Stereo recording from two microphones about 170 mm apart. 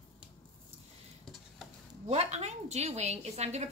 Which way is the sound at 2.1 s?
40° right (ahead or behind).